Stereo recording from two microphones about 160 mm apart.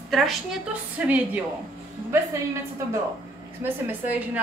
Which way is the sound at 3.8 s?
10° right (ahead or behind).